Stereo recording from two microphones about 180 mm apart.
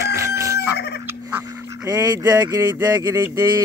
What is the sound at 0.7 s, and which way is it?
Fowl, 65° left (ahead or behind).